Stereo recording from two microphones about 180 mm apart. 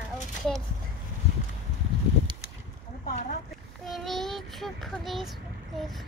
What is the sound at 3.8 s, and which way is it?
Child singing, centre (ahead or behind).